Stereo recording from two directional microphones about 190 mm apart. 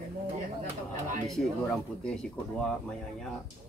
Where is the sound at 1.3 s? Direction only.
Centre (ahead or behind).